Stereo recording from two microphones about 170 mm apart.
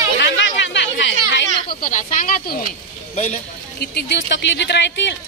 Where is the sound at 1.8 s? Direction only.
50° left (ahead or behind).